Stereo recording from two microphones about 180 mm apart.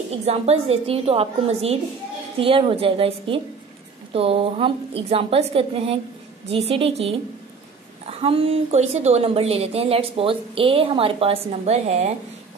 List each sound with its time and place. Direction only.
0.2 s a woman's voice: 35° right (ahead or behind)